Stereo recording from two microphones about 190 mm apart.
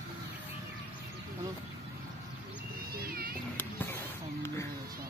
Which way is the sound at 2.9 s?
50° right (ahead or behind).